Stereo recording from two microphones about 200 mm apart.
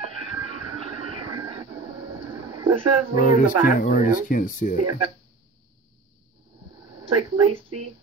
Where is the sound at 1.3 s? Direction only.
20° right (ahead or behind).